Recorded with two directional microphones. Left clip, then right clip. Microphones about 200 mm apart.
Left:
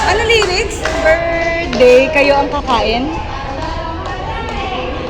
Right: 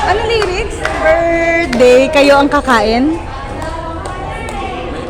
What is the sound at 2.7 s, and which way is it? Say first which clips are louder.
Speech: right 3 dB; 60° right (ahead or behind).